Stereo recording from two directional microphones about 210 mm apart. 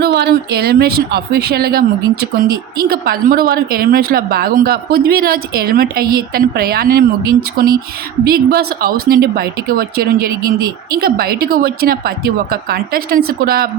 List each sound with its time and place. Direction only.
0.0 s speech: 50° right (ahead or behind)